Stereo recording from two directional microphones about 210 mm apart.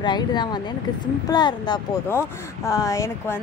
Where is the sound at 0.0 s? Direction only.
20° left (ahead or behind).